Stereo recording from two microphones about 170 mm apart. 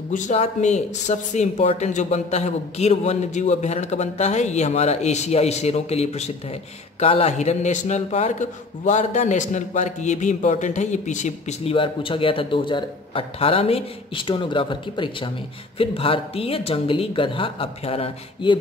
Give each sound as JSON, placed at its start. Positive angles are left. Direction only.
{"t": 0.1, "sound": "a man's voice", "side_deg": 45}